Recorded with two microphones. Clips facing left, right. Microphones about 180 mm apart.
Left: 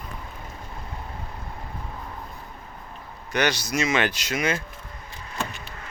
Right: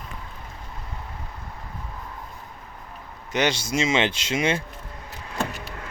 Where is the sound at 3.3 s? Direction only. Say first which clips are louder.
Right 1 dB; 25° right (ahead or behind).